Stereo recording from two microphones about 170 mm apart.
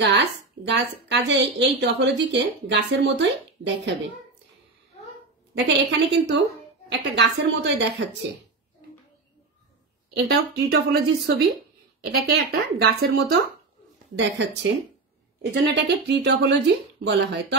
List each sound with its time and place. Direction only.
0.0 s a woman's voice: 90° right
5.5 s a woman's voice: 90° right
10.1 s a woman's voice: 70° right (ahead or behind)
14.1 s a woman's voice: 90° right